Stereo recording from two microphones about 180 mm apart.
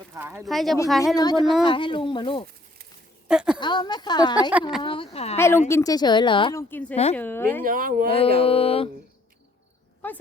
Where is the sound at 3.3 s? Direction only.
5° right (ahead or behind).